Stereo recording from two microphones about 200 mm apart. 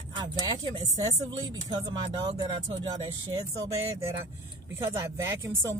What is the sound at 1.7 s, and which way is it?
Speech, 20° right (ahead or behind).